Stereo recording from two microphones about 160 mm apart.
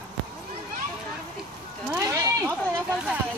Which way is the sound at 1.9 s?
15° right (ahead or behind).